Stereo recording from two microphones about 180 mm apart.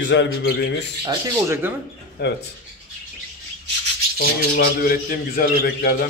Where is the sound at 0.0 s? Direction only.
80° left.